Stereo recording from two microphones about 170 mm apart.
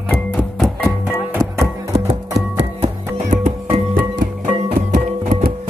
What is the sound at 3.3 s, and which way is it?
Music, 55° right (ahead or behind).